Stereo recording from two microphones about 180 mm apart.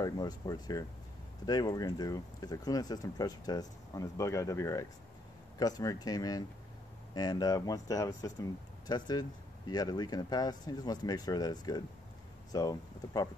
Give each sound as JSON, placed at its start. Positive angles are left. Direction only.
{"t": 0.0, "sound": "speech", "side_deg": 20}